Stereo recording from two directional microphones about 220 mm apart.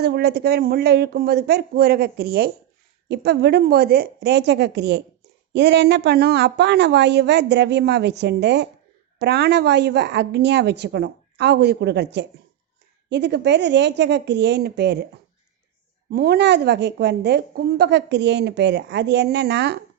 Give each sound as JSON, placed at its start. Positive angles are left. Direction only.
{"t": 0.0, "sound": "a woman's voice", "side_deg": -45}
{"t": 16.0, "sound": "a woman's voice", "side_deg": -45}